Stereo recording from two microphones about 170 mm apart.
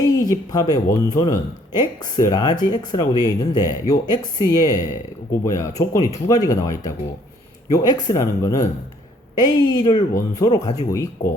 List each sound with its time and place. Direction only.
0.0 s speech: 20° left (ahead or behind)